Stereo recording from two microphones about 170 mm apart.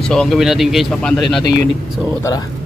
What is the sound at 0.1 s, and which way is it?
Speech, centre (ahead or behind).